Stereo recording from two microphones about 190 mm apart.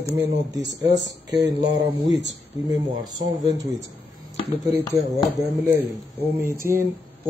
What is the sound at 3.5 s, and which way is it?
A woman's voice, 20° right (ahead or behind).